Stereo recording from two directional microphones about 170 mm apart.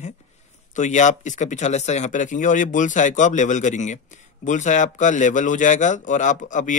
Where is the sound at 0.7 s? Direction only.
45° left (ahead or behind).